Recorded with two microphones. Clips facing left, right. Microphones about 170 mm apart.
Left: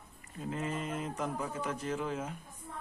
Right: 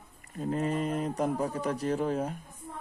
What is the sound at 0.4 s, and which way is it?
Speech, 40° right (ahead or behind).